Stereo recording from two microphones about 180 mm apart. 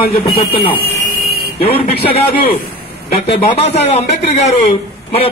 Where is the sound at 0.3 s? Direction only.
30° left (ahead or behind).